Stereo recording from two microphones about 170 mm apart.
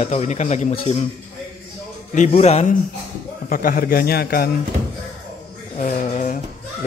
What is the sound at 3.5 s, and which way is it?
A man's voice, 55° left (ahead or behind).